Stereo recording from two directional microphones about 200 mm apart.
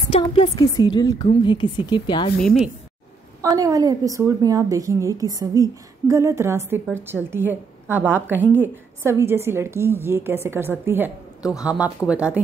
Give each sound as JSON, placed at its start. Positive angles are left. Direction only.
{"t": 0.1, "sound": "a woman's voice", "side_deg": 25}
{"t": 2.4, "sound": "speech", "side_deg": 0}
{"t": 3.4, "sound": "a woman's voice", "side_deg": -15}